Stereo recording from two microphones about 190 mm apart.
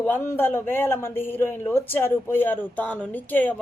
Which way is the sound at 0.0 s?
10° left (ahead or behind).